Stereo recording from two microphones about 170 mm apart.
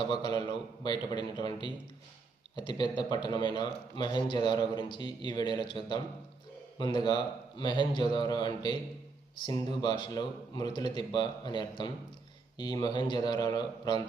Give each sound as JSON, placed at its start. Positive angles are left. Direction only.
{"t": 0.0, "sound": "a man's voice", "side_deg": 25}